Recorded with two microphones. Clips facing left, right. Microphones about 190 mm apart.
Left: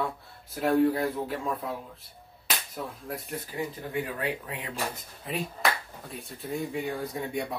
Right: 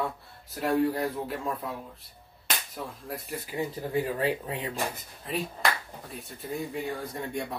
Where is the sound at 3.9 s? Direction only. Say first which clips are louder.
Right 4 dB; 35° right (ahead or behind).